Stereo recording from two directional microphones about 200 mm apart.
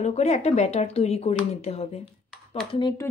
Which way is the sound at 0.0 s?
35° left (ahead or behind).